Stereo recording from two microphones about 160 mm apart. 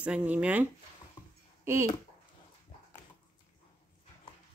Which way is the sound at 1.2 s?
30° left (ahead or behind).